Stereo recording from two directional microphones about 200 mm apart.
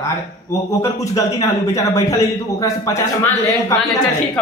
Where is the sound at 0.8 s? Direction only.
15° left (ahead or behind).